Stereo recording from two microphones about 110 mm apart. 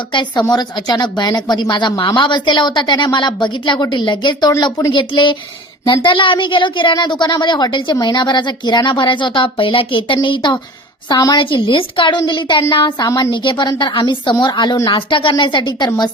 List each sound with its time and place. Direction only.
0.4 s speech: 40° left (ahead or behind)
4.9 s speech: 45° left (ahead or behind)
11.1 s speech: 35° left (ahead or behind)
13.1 s a woman's voice: 30° left (ahead or behind)
13.3 s speech: 45° left (ahead or behind)